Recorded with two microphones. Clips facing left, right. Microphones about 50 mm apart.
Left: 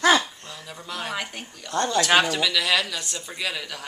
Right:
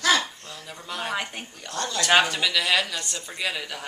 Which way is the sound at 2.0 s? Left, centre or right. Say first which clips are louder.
Right 3 dB; centre.